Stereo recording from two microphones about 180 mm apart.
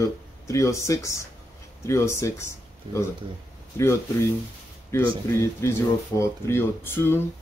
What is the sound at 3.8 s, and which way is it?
Speech, 15° left (ahead or behind).